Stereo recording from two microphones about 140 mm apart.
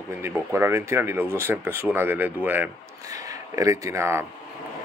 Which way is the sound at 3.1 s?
25° right (ahead or behind).